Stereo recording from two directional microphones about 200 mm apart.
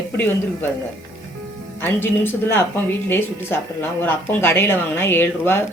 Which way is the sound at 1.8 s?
10° left (ahead or behind).